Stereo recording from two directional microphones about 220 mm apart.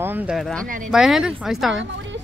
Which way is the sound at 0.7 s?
35° right (ahead or behind).